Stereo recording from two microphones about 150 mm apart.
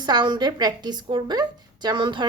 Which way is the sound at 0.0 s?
30° right (ahead or behind).